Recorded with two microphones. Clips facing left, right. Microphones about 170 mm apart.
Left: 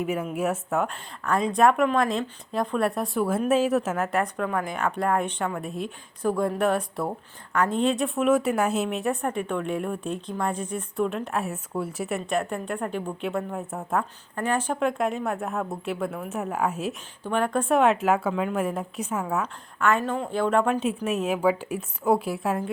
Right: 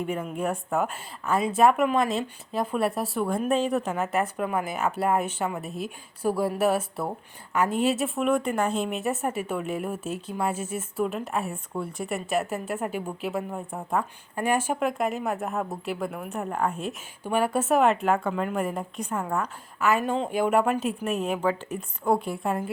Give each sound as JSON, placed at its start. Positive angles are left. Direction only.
{"t": 0.0, "sound": "a woman's voice", "side_deg": 5}
{"t": 14.3, "sound": "a woman's voice", "side_deg": -10}
{"t": 17.2, "sound": "a woman's voice", "side_deg": -10}